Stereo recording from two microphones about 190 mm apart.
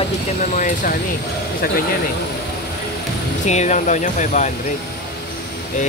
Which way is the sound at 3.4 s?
40° left (ahead or behind).